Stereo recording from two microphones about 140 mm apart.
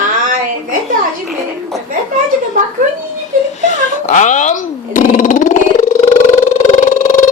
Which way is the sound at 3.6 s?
60° left (ahead or behind).